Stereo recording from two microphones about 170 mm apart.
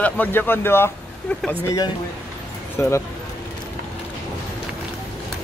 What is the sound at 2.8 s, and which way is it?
Speech, 10° left (ahead or behind).